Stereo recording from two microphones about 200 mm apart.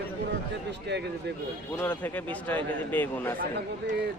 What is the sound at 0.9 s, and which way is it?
Speech, 60° right (ahead or behind).